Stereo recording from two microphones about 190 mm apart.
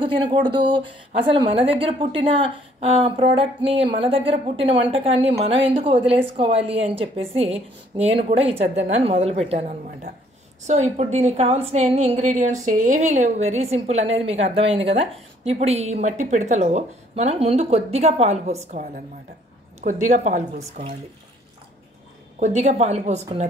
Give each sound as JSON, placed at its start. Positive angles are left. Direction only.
{"t": 0.0, "sound": "a woman's voice", "side_deg": -25}
{"t": 22.4, "sound": "a woman's voice", "side_deg": -35}